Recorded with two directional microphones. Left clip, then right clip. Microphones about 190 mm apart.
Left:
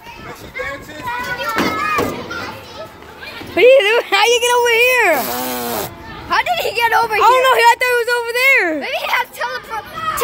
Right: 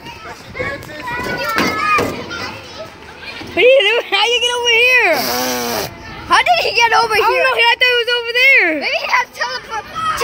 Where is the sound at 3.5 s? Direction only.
15° left (ahead or behind).